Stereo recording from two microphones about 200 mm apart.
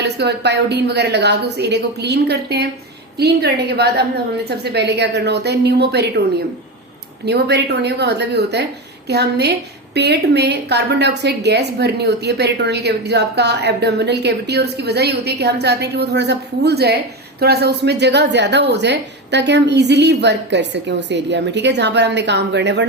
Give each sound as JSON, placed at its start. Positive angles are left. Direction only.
{"t": 0.0, "sound": "a woman's voice", "side_deg": -55}
{"t": 7.3, "sound": "a woman's voice", "side_deg": -55}